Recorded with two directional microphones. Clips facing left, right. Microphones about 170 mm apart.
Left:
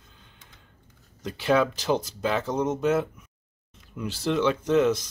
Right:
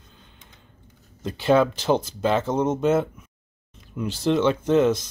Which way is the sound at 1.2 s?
25° right (ahead or behind).